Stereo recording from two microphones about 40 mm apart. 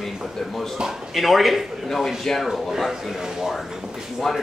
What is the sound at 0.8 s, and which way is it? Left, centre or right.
Speech, centre.